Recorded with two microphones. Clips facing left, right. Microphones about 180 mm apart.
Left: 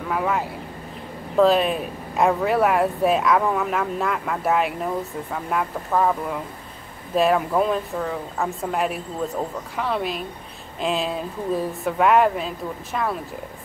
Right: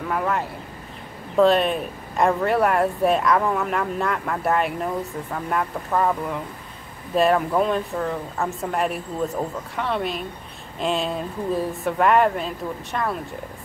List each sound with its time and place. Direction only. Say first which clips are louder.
0.1 s speech: left 1 dB; centre (ahead or behind)